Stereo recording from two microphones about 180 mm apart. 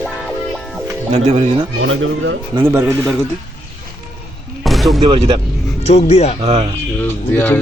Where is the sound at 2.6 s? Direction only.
10° right (ahead or behind).